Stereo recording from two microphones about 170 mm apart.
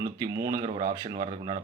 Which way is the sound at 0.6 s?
45° right (ahead or behind).